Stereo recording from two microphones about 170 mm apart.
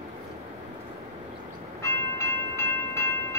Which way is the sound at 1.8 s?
15° left (ahead or behind).